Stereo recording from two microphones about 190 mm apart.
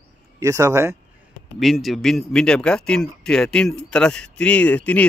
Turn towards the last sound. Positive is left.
turn(degrees=5)  # may be behind; listen again after turning